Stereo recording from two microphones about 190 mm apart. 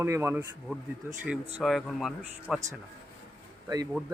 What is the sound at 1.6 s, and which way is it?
Speech, centre (ahead or behind).